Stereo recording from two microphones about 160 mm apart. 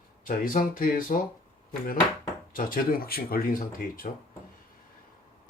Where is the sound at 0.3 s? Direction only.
60° left (ahead or behind).